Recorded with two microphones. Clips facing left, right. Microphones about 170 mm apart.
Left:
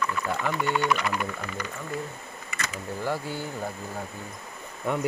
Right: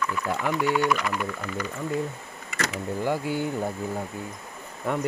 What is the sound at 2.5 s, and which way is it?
Speech, 80° right.